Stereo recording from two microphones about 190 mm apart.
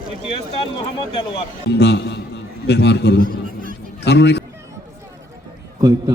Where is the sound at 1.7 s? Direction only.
60° left (ahead or behind).